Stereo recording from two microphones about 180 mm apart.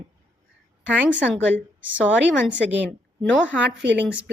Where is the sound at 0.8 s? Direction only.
10° right (ahead or behind).